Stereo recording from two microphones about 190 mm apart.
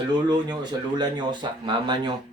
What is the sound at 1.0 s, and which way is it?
Speech, 25° right (ahead or behind).